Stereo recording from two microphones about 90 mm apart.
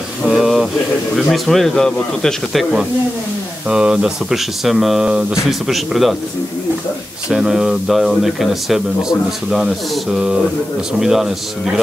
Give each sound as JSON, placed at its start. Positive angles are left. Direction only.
{"t": 0.2, "sound": "a sound", "side_deg": -5}
{"t": 1.1, "sound": "speech", "side_deg": 0}
{"t": 3.6, "sound": "speech", "side_deg": -10}
{"t": 7.2, "sound": "speech", "side_deg": -5}
{"t": 11.0, "sound": "speech", "side_deg": -5}